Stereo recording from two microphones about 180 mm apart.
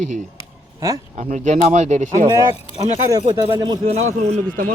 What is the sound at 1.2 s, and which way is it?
Speech, 40° right (ahead or behind).